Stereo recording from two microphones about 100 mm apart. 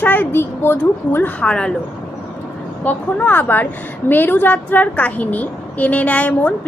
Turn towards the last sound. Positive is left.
turn(degrees=15)  # may be behind; listen again after turning